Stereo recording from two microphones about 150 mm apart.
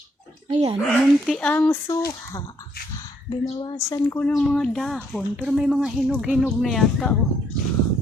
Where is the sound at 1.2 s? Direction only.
5° left (ahead or behind).